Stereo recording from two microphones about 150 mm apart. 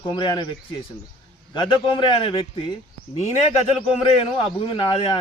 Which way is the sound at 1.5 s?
35° left (ahead or behind).